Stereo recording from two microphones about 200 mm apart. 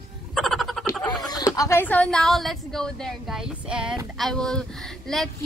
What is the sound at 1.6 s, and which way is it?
A woman's voice, 10° left (ahead or behind).